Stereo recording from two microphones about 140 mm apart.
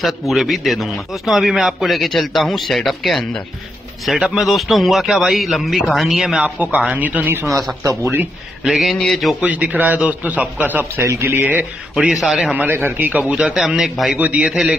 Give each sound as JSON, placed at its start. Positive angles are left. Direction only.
{"t": 0.0, "sound": "a man's voice", "side_deg": 0}
{"t": 7.4, "sound": "a man's voice", "side_deg": 0}
{"t": 7.8, "sound": "speech", "side_deg": -20}
{"t": 8.6, "sound": "a man's voice", "side_deg": 0}
{"t": 9.5, "sound": "a man's voice", "side_deg": -10}